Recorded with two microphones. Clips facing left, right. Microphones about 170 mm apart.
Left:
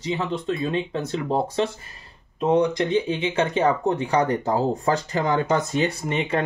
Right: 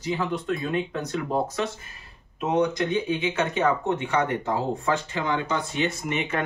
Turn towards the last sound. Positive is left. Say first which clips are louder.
# left 3 dB
turn(degrees=30)  # may be behind; listen again after turning